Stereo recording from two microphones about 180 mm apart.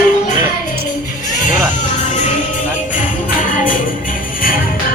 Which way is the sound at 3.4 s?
50° left (ahead or behind).